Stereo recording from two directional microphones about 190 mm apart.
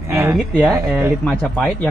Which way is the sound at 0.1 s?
10° right (ahead or behind).